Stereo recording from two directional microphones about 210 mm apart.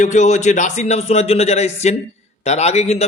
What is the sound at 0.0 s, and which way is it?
A man's voice, 35° left (ahead or behind).